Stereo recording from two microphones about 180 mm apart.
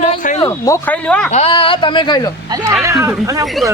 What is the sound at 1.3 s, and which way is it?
Speech, 35° left (ahead or behind).